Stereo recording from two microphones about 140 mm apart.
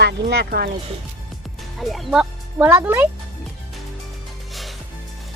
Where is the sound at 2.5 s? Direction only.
15° right (ahead or behind).